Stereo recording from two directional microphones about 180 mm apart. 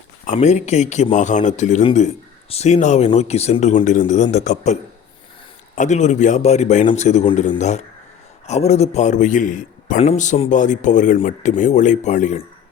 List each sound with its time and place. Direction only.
0.3 s speech: 40° left (ahead or behind)
8.4 s a man's voice: 35° left (ahead or behind)